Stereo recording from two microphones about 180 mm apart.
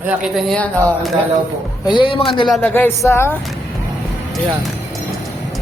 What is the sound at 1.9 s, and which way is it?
Speech, 30° left (ahead or behind).